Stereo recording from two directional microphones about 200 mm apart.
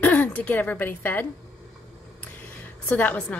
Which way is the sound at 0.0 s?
10° left (ahead or behind).